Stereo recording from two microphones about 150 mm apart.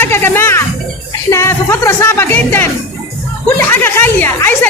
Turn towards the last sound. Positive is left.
turn(degrees=15)  # may be behind; listen again after turning